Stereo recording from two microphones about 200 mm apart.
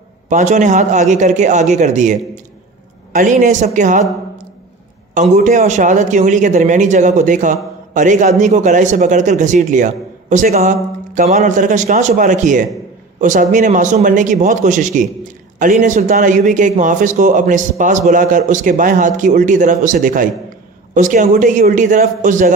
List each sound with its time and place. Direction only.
0.3 s speech: 35° right (ahead or behind)
5.1 s speech: 35° right (ahead or behind)